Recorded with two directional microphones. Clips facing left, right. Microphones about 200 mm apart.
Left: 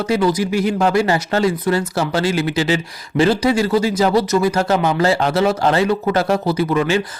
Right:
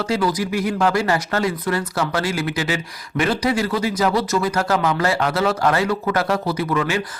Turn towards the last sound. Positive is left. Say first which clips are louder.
# left 4 dB
turn(degrees=25)  # may be behind; listen again after turning